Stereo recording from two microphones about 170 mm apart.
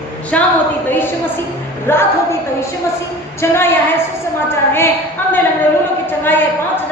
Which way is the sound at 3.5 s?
15° left (ahead or behind).